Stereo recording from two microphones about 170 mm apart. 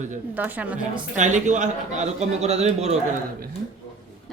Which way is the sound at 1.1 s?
45° right (ahead or behind).